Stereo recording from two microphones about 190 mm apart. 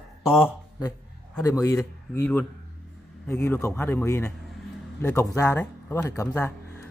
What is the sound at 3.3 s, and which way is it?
A man's voice, 15° left (ahead or behind).